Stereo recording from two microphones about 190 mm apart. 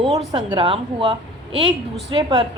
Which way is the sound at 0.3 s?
25° right (ahead or behind).